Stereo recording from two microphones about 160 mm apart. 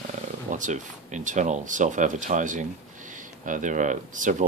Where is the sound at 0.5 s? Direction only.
50° right (ahead or behind).